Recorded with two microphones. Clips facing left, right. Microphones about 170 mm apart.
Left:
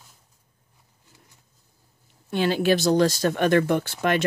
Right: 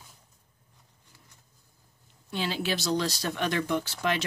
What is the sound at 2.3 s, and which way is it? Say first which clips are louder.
Speech: left 9 dB; 55° left (ahead or behind).